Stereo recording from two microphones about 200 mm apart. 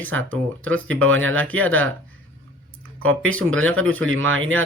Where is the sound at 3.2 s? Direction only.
90° right.